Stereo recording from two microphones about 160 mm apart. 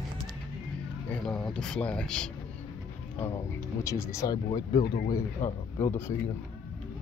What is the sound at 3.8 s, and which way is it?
Speech, 20° left (ahead or behind).